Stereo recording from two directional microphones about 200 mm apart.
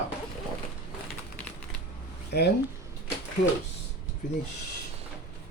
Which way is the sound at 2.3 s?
55° left (ahead or behind).